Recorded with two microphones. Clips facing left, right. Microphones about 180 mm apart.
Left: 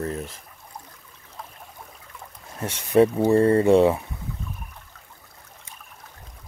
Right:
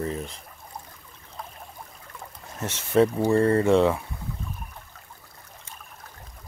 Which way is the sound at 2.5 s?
10° left (ahead or behind).